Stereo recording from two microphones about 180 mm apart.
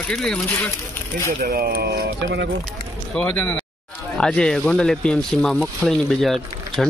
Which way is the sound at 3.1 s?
5° left (ahead or behind).